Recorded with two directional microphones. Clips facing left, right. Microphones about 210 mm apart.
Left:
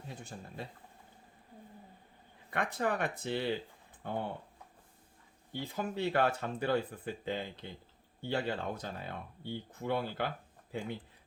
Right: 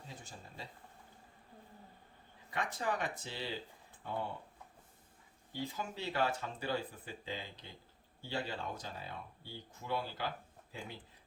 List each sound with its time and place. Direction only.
0.1 s speech: 60° left (ahead or behind)
2.5 s speech: 60° left (ahead or behind)
5.7 s speech: 55° left (ahead or behind)